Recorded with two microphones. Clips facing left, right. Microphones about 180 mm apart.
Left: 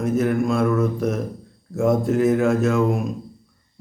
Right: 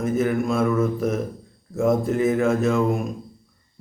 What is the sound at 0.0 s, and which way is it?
Mantra, centre (ahead or behind).